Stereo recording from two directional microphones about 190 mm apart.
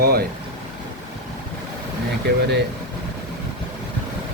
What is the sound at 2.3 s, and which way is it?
Speech, 60° right (ahead or behind).